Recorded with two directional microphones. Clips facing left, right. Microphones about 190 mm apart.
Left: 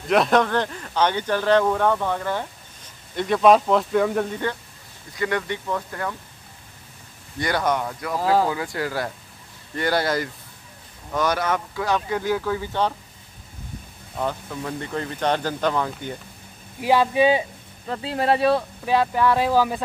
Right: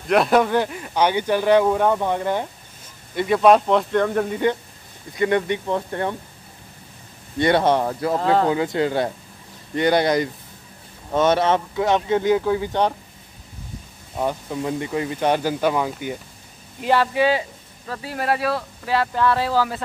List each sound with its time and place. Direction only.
0.1 s speech: 5° right (ahead or behind)
3.2 s speech: 5° right (ahead or behind)
4.3 s speech: 15° right (ahead or behind)
7.3 s speech: 25° right (ahead or behind)
8.2 s speech: 5° left (ahead or behind)
8.5 s speech: 20° right (ahead or behind)
14.1 s speech: 15° right (ahead or behind)
16.8 s speech: 15° left (ahead or behind)